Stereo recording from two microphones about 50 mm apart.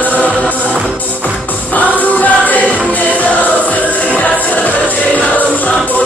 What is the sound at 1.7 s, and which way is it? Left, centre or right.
Music, left.